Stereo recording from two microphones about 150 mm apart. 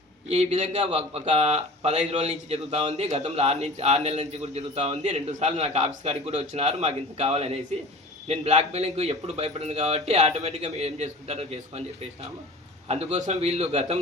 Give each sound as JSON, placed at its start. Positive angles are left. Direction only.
{"t": 0.3, "sound": "speech", "side_deg": -50}
{"t": 12.9, "sound": "speech", "side_deg": -50}